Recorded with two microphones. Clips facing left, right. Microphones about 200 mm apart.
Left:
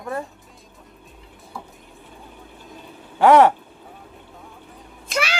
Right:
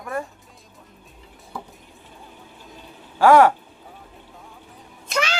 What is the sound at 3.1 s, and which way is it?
Speech, 20° left (ahead or behind).